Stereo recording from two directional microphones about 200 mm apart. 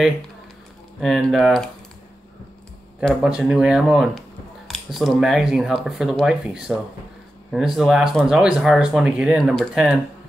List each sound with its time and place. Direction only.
1.0 s speech: centre (ahead or behind)
3.0 s speech: centre (ahead or behind)